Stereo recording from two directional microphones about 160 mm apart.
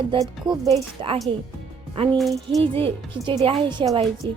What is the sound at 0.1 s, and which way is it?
Speech, 30° right (ahead or behind).